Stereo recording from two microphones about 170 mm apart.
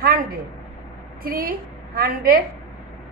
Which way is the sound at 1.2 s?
60° right (ahead or behind).